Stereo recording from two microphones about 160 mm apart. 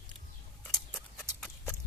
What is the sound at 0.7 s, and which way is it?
Horse, 5° left (ahead or behind).